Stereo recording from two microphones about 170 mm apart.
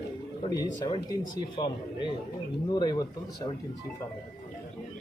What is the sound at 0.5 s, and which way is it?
Speech, 25° left (ahead or behind).